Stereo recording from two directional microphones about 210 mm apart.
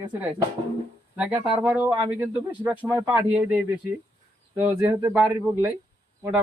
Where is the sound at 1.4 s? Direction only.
25° right (ahead or behind).